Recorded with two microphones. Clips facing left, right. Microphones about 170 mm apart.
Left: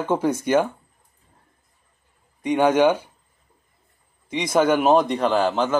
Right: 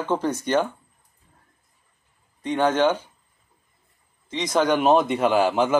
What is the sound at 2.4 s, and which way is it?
Speech, 10° left (ahead or behind).